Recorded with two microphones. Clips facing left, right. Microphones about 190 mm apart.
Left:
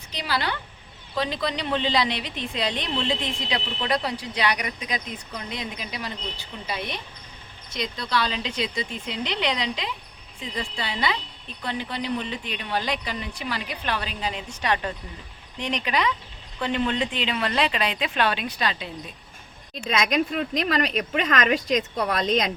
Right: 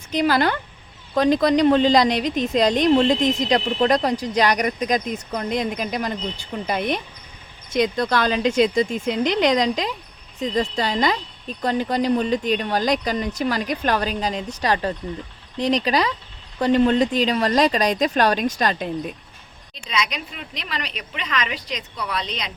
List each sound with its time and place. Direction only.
0.1 s a woman's voice: 50° right (ahead or behind)
19.7 s speech: 50° left (ahead or behind)